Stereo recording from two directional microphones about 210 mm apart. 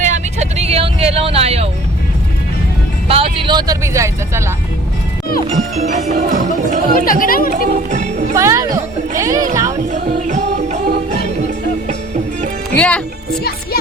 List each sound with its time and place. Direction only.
0.0 s vehicle: 35° right (ahead or behind)
3.1 s speech: 25° right (ahead or behind)
5.5 s speech: 35° right (ahead or behind)
7.0 s speech: 40° left (ahead or behind)
7.5 s speech: 35° right (ahead or behind)
8.4 s speech: 15° right (ahead or behind)
9.9 s music: 35° right (ahead or behind)
12.7 s speech: 5° left (ahead or behind)